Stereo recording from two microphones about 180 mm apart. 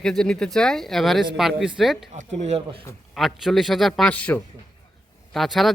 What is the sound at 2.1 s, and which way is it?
Speech, 40° right (ahead or behind).